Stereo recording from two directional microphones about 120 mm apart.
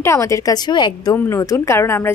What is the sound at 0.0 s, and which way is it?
A woman's voice, 25° left (ahead or behind).